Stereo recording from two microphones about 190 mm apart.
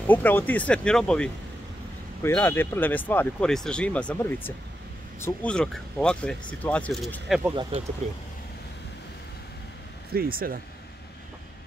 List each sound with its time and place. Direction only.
0.0 s speech: 10° left (ahead or behind)
10.1 s speech: 50° right (ahead or behind)